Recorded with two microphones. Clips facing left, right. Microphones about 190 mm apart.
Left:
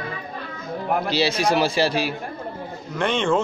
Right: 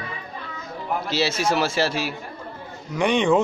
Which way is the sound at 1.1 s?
Centre (ahead or behind).